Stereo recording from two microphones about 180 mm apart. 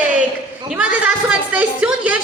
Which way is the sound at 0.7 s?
5° right (ahead or behind).